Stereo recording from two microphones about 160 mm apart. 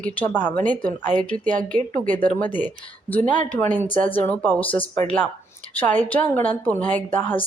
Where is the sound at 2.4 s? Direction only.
10° left (ahead or behind).